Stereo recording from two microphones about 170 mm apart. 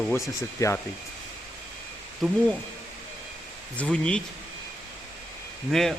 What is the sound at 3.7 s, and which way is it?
Speech, 5° left (ahead or behind).